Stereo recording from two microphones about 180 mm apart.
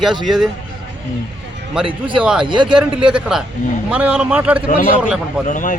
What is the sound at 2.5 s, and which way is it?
Speech, 25° right (ahead or behind).